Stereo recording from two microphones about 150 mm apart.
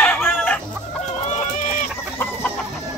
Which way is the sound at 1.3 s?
55° left (ahead or behind).